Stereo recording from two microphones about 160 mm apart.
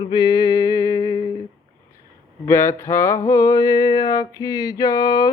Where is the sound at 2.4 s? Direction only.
15° left (ahead or behind).